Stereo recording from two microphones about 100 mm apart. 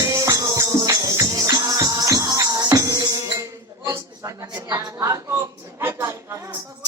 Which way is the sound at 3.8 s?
35° right (ahead or behind).